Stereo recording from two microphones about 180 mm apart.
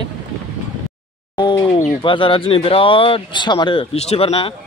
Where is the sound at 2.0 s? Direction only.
30° left (ahead or behind).